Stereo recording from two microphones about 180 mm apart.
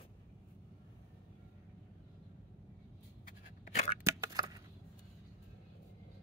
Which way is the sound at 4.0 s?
20° right (ahead or behind).